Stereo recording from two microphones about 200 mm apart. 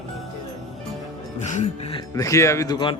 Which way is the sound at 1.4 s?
35° left (ahead or behind).